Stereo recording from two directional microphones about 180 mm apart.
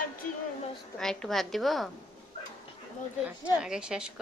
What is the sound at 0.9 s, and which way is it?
Speech, 5° left (ahead or behind).